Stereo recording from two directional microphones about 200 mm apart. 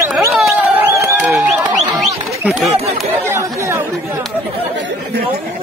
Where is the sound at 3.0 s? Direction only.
10° right (ahead or behind).